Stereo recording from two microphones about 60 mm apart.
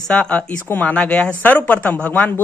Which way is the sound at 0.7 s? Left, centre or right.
Left.